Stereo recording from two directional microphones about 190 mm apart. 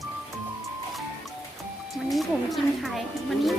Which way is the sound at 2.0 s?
Centre (ahead or behind).